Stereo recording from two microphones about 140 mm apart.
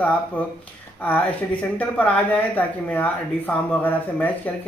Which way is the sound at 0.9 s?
10° left (ahead or behind).